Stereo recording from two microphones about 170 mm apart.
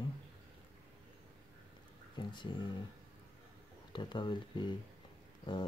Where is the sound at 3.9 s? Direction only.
25° left (ahead or behind).